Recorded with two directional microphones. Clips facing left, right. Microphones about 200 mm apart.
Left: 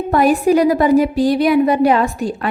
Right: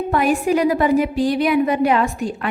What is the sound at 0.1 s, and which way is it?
A woman's voice, 40° left (ahead or behind).